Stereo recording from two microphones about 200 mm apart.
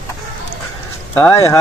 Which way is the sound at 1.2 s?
10° left (ahead or behind).